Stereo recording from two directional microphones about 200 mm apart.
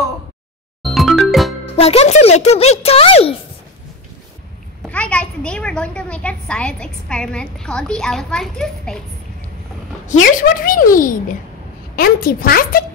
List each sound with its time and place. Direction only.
0.9 s music: centre (ahead or behind)
1.8 s a child's voice: 30° left (ahead or behind)
4.8 s a child's voice: 5° left (ahead or behind)
10.0 s speech: 40° left (ahead or behind)